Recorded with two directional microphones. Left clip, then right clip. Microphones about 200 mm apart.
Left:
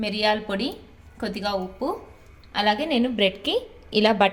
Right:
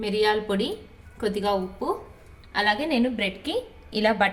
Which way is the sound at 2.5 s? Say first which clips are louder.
Left 1 dB; 30° left (ahead or behind).